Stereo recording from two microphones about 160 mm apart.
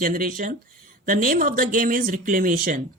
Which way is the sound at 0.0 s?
60° right (ahead or behind).